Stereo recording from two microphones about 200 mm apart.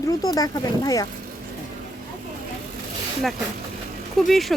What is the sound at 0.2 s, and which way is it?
Speech, 20° left (ahead or behind).